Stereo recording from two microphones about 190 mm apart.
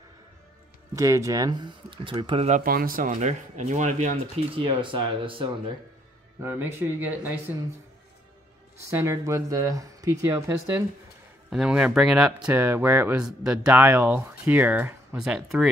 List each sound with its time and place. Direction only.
0.9 s speech: 15° right (ahead or behind); by 4.2 s 40° right (ahead or behind)
4.6 s speech: 25° right (ahead or behind)
6.4 s speech: 10° right (ahead or behind)
8.9 s speech: 15° right (ahead or behind)
11.5 s speech: 5° right (ahead or behind)